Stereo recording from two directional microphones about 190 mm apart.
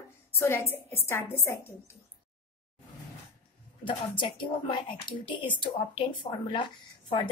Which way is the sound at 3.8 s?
25° left (ahead or behind).